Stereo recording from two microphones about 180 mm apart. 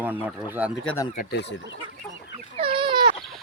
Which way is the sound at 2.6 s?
30° right (ahead or behind).